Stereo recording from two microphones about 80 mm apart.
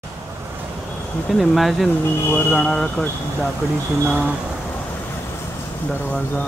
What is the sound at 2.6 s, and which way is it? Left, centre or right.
Speech, centre.